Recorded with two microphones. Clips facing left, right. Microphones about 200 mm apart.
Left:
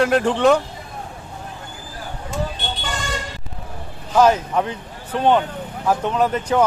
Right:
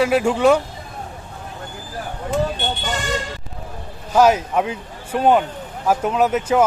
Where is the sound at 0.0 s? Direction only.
5° right (ahead or behind).